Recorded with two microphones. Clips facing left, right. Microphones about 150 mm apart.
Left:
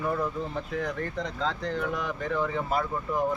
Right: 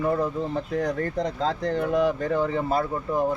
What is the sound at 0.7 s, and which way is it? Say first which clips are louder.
Speech: right 5 dB; 40° right (ahead or behind).